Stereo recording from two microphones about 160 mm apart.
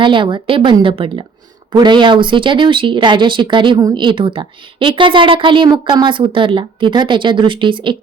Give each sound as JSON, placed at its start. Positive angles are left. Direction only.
{"t": 0.0, "sound": "speech", "side_deg": -30}